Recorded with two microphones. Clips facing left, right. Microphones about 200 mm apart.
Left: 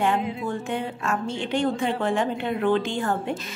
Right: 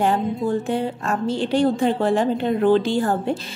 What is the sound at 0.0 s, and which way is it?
A woman's voice, 35° right (ahead or behind).